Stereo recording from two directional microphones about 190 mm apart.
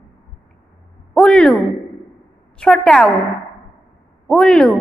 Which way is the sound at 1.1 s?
5° left (ahead or behind).